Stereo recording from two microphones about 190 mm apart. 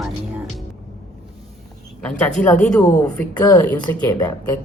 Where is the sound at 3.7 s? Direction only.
20° left (ahead or behind).